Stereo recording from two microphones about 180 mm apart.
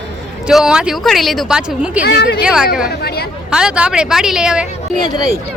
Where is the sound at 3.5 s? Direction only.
5° right (ahead or behind).